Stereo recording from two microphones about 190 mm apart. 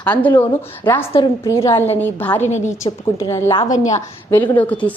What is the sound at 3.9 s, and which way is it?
A woman's voice, 10° left (ahead or behind).